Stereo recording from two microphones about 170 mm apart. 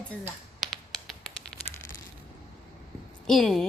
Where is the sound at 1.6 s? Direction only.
35° left (ahead or behind).